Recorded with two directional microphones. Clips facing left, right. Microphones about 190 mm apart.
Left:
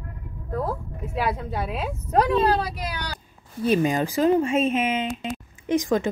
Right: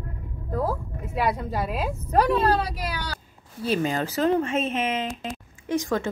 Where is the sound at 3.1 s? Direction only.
15° left (ahead or behind); by 5.3 s centre (ahead or behind).